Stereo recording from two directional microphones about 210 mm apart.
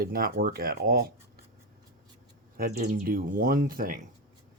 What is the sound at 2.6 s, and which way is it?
Speech, 45° right (ahead or behind).